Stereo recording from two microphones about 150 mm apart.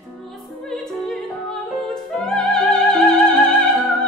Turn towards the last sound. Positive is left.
turn(degrees=5)  # may be behind; listen again after turning